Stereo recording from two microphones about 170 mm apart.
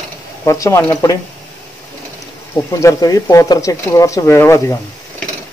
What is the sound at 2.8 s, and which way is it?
Speech, 20° left (ahead or behind).